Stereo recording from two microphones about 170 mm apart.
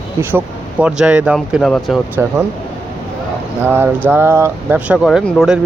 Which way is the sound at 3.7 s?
15° right (ahead or behind).